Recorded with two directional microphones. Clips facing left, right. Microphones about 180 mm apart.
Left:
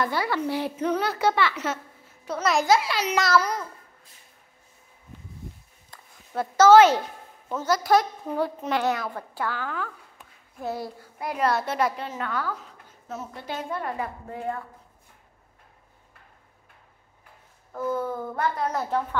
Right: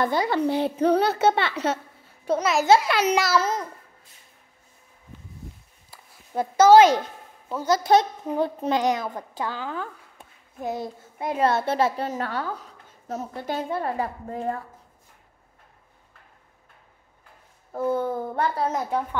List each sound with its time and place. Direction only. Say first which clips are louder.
0.0 s a woman's voice: right 4 dB; 25° right (ahead or behind)
2.8 s a child's voice: right 5 dB; 55° right (ahead or behind)
3.3 s a woman's voice: even; 20° right (ahead or behind)
5.9 s a sound: right 1 dB; 15° right (ahead or behind)
7.4 s a woman's voice: right 1 dB; 10° right (ahead or behind)
7.7 s a woman's voice: right 2 dB; 20° right (ahead or behind)
17.7 s a woman's voice: right 3 dB; 30° right (ahead or behind)
18.7 s a woman's voice: right 1 dB; 15° right (ahead or behind)